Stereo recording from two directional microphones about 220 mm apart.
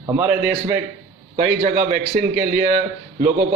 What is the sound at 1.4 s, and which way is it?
A man's voice, 35° right (ahead or behind).